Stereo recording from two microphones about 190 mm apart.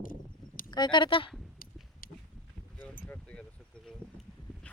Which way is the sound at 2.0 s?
50° left (ahead or behind).